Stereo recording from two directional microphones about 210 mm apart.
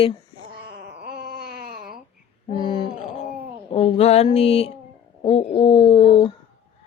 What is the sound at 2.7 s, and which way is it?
Mantra, 25° left (ahead or behind).